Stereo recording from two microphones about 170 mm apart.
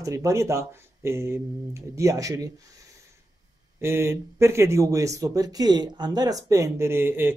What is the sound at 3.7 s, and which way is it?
Speech, 15° right (ahead or behind).